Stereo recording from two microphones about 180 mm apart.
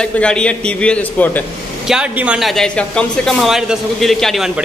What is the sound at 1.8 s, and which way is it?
Speech, 5° right (ahead or behind).